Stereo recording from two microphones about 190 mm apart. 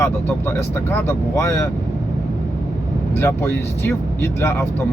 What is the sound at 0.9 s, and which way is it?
Speech, 15° left (ahead or behind).